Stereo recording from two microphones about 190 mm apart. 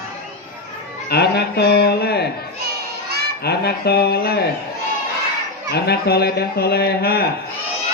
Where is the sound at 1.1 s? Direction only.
60° left (ahead or behind).